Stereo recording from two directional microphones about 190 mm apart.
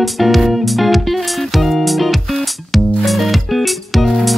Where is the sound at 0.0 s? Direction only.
Centre (ahead or behind).